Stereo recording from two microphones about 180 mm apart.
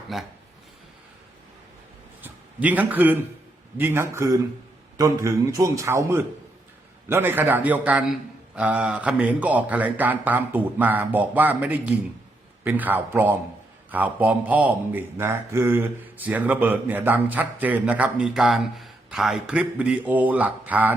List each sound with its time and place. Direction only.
0.1 s a man's voice: centre (ahead or behind)
2.2 s a man's voice: 10° right (ahead or behind)